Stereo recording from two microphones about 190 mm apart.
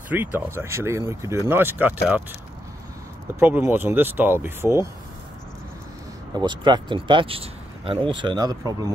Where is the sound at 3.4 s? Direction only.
10° right (ahead or behind).